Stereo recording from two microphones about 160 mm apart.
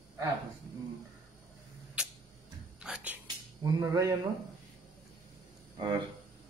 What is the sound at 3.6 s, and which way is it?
Speech, 20° right (ahead or behind).